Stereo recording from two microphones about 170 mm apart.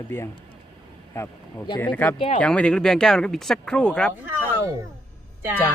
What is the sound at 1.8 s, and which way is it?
Speech, 10° left (ahead or behind).